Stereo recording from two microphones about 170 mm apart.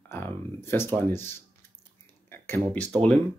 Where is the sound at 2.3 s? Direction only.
10° left (ahead or behind).